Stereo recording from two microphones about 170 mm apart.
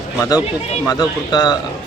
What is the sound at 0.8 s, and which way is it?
Speech, 25° left (ahead or behind).